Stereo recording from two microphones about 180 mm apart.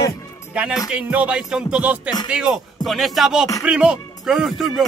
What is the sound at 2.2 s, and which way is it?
Music, 5° right (ahead or behind).